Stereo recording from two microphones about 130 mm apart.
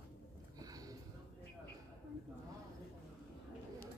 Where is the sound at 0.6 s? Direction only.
30° right (ahead or behind).